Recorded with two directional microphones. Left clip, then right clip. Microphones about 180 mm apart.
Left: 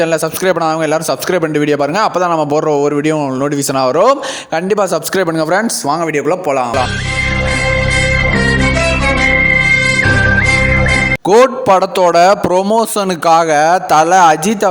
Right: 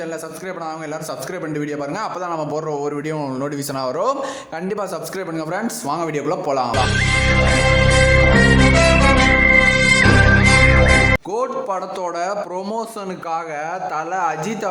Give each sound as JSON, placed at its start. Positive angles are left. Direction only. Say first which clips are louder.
{"t": 0.0, "sound": "a man's voice", "louder": "left 15 dB", "side_deg": 50}
{"t": 7.7, "sound": "music", "louder": "left 2 dB", "side_deg": 0}
{"t": 11.3, "sound": "a man's voice", "louder": "left 14 dB", "side_deg": 50}